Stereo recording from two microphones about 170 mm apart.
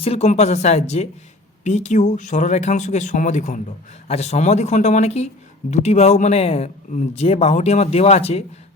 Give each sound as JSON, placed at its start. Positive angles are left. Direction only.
{"t": 0.0, "sound": "speech", "side_deg": 35}